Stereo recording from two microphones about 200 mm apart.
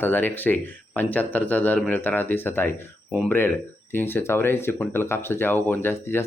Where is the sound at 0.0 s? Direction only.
10° left (ahead or behind).